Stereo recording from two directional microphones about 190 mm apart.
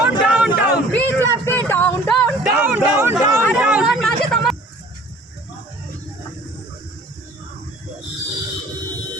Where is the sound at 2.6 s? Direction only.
10° right (ahead or behind).